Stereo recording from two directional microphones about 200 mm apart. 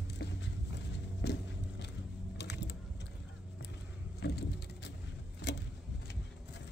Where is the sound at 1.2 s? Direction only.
55° left (ahead or behind).